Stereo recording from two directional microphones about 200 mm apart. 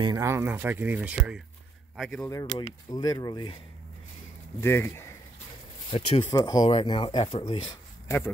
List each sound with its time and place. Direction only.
0.0 s speech: 15° right (ahead or behind); by 2.2 s 5° left (ahead or behind)
2.9 s speech: 20° left (ahead or behind)
4.6 s speech: 10° left (ahead or behind)
5.9 s speech: 30° left (ahead or behind)